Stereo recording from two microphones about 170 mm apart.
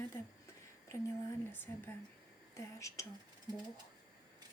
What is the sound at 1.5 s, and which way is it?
Speech, 15° left (ahead or behind).